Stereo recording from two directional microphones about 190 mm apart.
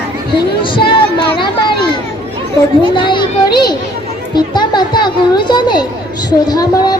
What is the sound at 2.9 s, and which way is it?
Speech, 25° left (ahead or behind).